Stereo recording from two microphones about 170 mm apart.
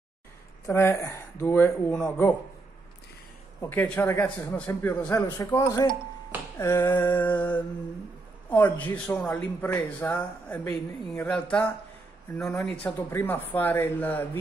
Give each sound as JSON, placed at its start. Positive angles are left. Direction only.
{"t": 0.7, "sound": "speech", "side_deg": 15}
{"t": 3.6, "sound": "speech", "side_deg": 10}
{"t": 12.8, "sound": "speech", "side_deg": 10}